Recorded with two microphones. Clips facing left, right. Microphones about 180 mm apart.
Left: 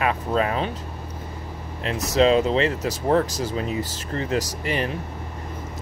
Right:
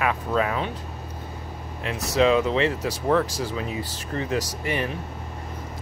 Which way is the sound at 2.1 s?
35° left (ahead or behind).